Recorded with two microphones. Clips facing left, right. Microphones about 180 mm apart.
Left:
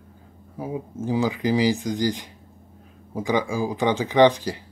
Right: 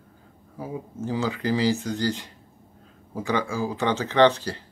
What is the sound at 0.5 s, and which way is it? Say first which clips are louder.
Speech: left 3 dB; 15° left (ahead or behind).